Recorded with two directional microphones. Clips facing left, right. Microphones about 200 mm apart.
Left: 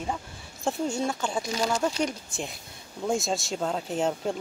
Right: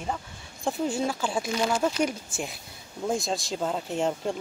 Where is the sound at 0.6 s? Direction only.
5° right (ahead or behind).